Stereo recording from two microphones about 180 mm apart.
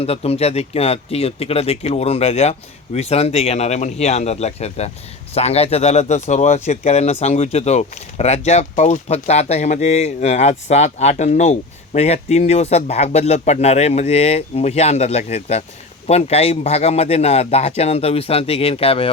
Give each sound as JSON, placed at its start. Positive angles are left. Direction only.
{"t": 0.0, "sound": "speech", "side_deg": 35}